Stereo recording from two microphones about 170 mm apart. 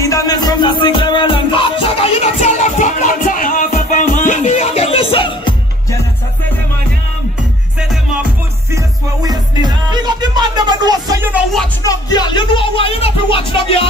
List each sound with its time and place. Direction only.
0.0 s music: 20° left (ahead or behind)
8.7 s music: 20° right (ahead or behind)
11.8 s music: 20° left (ahead or behind)